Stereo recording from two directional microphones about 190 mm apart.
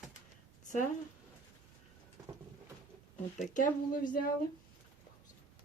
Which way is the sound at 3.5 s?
45° left (ahead or behind).